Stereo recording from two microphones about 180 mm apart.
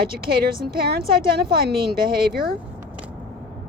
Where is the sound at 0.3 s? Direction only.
55° right (ahead or behind).